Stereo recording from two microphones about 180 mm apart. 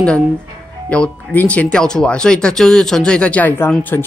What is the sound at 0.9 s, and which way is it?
Speech, 5° left (ahead or behind).